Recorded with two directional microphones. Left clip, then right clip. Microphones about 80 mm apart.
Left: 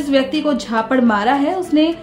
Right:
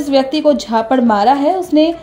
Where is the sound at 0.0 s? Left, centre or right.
Centre.